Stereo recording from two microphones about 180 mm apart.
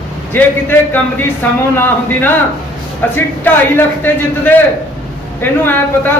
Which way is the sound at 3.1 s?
10° left (ahead or behind).